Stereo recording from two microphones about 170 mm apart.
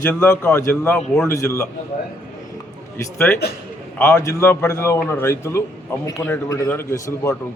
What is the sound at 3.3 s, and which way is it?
A man's voice, 10° left (ahead or behind).